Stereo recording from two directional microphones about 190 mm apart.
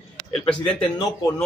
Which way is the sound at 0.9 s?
20° left (ahead or behind).